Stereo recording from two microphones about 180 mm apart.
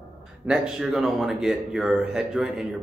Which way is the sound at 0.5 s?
Centre (ahead or behind).